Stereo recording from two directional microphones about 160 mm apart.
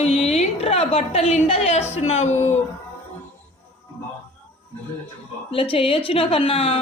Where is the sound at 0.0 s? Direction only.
40° left (ahead or behind).